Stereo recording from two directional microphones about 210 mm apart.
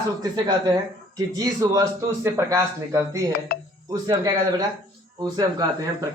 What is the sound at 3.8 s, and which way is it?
Speech, 15° right (ahead or behind).